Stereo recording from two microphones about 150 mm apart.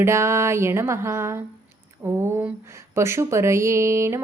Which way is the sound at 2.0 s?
15° right (ahead or behind).